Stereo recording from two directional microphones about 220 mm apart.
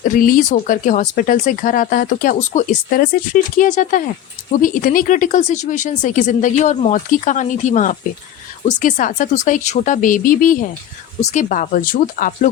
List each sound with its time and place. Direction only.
0.0 s speech: 40° left (ahead or behind)